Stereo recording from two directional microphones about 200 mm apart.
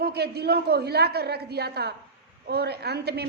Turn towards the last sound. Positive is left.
turn(degrees=-55)  # may be behind; listen again after turning